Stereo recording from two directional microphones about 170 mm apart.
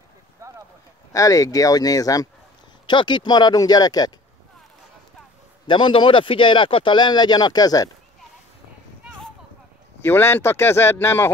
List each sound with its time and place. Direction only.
0.4 s a sound: 15° right (ahead or behind)
1.1 s speech: 20° left (ahead or behind)
5.7 s speech: 30° left (ahead or behind)
10.0 s speech: 15° left (ahead or behind)